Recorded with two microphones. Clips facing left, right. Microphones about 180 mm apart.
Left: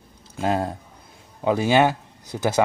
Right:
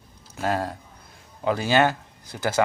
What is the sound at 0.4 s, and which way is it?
Speech, 20° left (ahead or behind).